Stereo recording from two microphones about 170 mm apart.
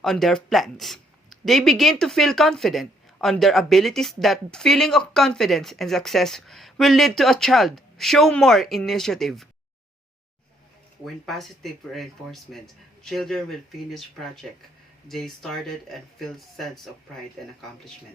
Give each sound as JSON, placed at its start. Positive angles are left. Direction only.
{"t": 0.0, "sound": "speech", "side_deg": 0}
{"t": 11.0, "sound": "speech", "side_deg": 0}
{"t": 15.0, "sound": "speech", "side_deg": 0}